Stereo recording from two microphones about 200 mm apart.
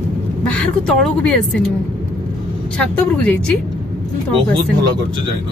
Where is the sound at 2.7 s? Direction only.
5° left (ahead or behind).